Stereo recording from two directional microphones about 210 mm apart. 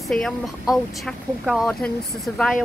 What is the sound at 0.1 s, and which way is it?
Speech, centre (ahead or behind).